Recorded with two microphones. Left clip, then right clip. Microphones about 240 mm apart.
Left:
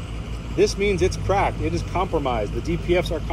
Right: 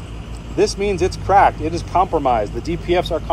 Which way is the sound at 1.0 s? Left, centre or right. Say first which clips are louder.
Right 12 dB; right.